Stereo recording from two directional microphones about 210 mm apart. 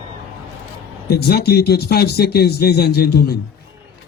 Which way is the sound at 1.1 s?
50° left (ahead or behind).